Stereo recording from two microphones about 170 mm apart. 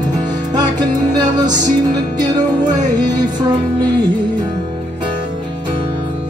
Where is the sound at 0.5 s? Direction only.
25° right (ahead or behind).